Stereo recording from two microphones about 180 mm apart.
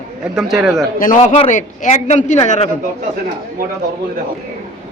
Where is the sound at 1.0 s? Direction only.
45° left (ahead or behind).